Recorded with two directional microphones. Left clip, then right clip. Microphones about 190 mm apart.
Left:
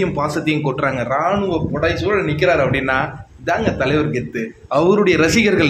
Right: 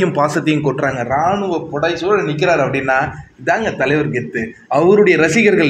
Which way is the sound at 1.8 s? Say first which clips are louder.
Right 3 dB; 5° left (ahead or behind).